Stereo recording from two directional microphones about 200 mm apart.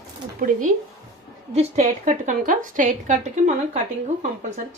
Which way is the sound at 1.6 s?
35° right (ahead or behind).